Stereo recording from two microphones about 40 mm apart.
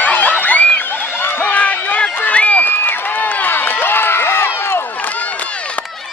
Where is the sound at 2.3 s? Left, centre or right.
Left.